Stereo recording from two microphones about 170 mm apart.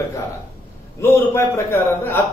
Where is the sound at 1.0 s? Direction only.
15° left (ahead or behind).